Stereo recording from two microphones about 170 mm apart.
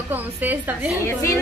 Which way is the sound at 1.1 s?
15° left (ahead or behind).